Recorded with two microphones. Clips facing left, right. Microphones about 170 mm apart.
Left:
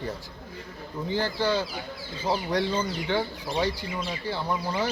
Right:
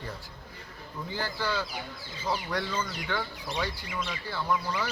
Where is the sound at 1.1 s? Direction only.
25° left (ahead or behind).